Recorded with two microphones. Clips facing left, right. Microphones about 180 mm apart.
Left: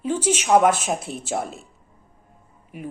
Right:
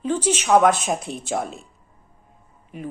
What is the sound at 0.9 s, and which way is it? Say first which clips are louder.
Speech: right 1 dB; 5° left (ahead or behind).